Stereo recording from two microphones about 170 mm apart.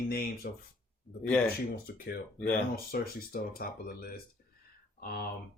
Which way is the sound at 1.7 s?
65° left (ahead or behind).